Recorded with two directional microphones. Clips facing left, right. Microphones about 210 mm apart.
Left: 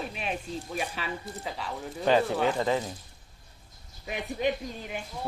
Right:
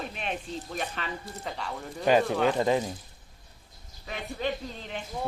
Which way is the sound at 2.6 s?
20° right (ahead or behind).